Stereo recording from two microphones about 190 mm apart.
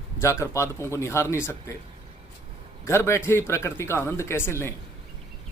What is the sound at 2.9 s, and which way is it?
Speech, 15° left (ahead or behind).